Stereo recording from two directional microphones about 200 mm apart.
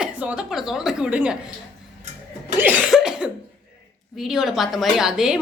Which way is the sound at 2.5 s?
10° right (ahead or behind).